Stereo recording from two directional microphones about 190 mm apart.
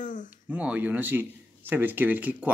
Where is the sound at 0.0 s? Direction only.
40° left (ahead or behind).